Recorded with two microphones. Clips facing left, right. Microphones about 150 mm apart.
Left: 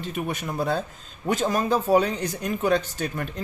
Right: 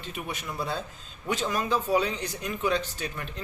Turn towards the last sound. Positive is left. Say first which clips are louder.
# left 6 dB
turn(degrees=45)  # may be behind; listen again after turning